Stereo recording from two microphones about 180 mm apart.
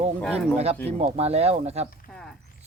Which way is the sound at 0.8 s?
35° right (ahead or behind).